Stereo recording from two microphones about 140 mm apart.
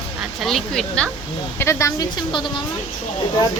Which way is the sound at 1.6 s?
20° left (ahead or behind).